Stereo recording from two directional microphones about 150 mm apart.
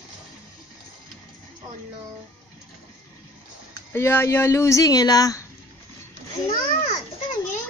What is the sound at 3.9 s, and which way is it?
Speech, 15° left (ahead or behind).